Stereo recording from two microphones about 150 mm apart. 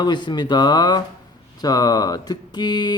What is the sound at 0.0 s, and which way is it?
Speech, 30° left (ahead or behind).